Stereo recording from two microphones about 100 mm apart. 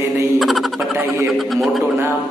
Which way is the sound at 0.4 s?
Centre (ahead or behind).